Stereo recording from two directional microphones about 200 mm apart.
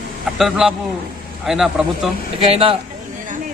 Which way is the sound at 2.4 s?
25° right (ahead or behind).